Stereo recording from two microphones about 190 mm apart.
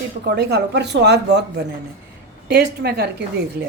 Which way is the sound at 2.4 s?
60° right (ahead or behind).